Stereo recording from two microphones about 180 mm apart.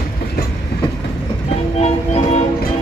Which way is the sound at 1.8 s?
40° left (ahead or behind).